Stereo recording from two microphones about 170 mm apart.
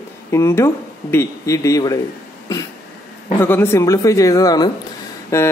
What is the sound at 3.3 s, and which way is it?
Speech, 15° left (ahead or behind).